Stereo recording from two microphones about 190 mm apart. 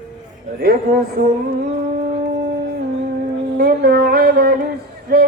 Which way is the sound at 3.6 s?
55° right (ahead or behind).